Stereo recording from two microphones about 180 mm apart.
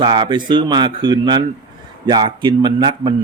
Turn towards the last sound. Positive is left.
turn(degrees=-25)  # may be behind; listen again after turning